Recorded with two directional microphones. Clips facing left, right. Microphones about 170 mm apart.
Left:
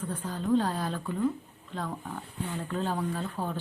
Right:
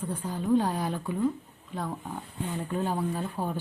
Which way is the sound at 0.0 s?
10° right (ahead or behind).